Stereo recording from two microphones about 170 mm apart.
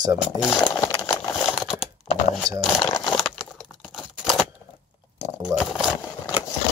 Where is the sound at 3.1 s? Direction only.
Centre (ahead or behind).